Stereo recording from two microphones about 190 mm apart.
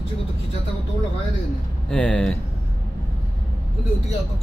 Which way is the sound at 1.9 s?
5° left (ahead or behind).